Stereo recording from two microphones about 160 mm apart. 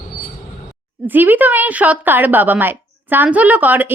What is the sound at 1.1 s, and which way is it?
A woman's voice, 10° right (ahead or behind).